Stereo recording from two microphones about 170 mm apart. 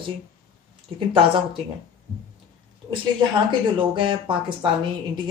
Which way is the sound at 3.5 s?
30° right (ahead or behind).